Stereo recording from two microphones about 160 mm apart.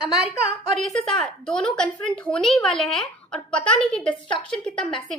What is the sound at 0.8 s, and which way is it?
A woman's voice, 5° left (ahead or behind).